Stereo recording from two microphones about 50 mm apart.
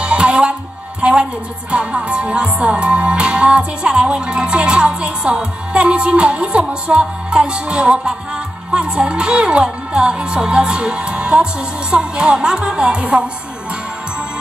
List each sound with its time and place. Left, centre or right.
0.0 s music: right
1.0 s a woman's voice: right
1.7 s music: right